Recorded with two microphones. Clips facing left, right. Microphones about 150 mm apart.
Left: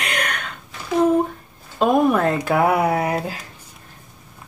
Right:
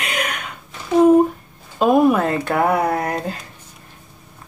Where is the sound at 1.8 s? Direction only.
5° right (ahead or behind).